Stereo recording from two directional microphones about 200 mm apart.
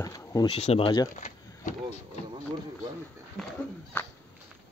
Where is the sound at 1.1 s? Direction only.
40° left (ahead or behind).